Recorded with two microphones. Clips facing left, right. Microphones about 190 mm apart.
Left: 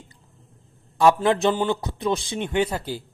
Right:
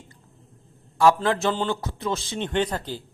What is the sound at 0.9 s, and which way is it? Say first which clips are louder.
A man's voice: left 1 dB; 20° left (ahead or behind).